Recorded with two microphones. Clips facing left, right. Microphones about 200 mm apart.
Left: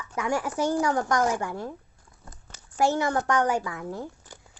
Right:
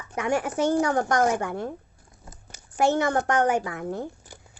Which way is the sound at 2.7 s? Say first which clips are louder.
Right 2 dB; 20° right (ahead or behind).